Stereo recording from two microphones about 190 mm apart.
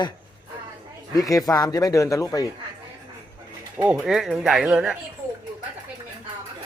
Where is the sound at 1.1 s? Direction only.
20° left (ahead or behind).